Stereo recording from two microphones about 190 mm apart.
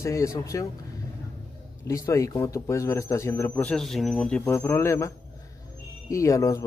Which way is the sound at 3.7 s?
Centre (ahead or behind).